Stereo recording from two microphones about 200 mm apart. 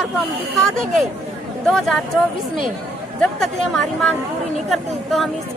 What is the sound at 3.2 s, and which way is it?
A woman's voice, centre (ahead or behind).